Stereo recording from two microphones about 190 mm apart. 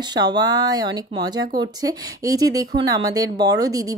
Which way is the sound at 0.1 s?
20° right (ahead or behind).